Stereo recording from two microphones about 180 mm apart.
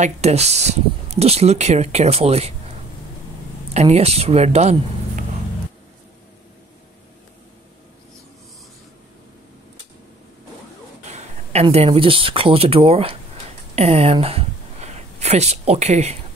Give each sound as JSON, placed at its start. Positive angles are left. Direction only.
{"t": 0.0, "sound": "speech", "side_deg": -35}
{"t": 3.7, "sound": "speech", "side_deg": -35}
{"t": 11.1, "sound": "speech", "side_deg": -35}